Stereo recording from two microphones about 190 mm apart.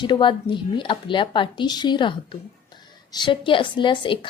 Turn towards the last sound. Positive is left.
turn(degrees=25)  # may be behind; listen again after turning